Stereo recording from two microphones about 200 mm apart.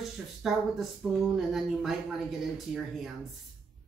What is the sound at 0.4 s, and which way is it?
Speech, centre (ahead or behind).